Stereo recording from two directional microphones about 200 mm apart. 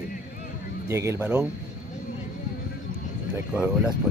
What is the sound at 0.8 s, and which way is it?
Speech, 15° right (ahead or behind).